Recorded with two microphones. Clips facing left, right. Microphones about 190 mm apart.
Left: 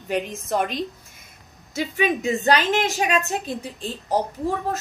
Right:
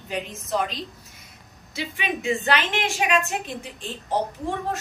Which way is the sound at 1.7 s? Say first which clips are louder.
Left 7 dB; 45° left (ahead or behind).